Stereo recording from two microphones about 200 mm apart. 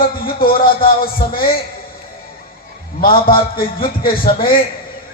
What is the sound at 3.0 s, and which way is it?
A man's voice, 45° left (ahead or behind).